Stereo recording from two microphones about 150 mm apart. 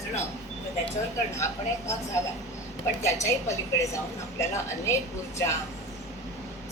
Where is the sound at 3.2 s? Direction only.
20° left (ahead or behind).